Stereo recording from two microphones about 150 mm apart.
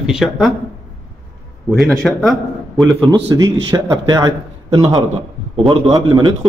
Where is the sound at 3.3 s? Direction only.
25° right (ahead or behind).